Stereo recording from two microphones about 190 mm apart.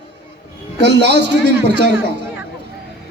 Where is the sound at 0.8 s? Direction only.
65° right (ahead or behind).